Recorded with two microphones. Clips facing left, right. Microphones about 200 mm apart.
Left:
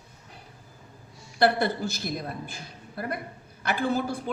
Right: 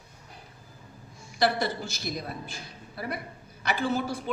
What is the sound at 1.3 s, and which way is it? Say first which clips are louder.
Speech: left 3 dB; 55° left (ahead or behind).